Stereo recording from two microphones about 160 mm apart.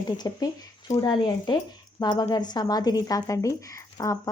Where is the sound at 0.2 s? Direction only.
25° left (ahead or behind).